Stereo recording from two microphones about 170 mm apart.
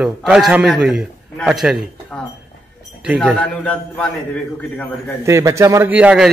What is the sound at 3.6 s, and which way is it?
A man's voice, 5° left (ahead or behind).